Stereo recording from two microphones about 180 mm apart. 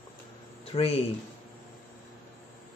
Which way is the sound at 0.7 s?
35° left (ahead or behind).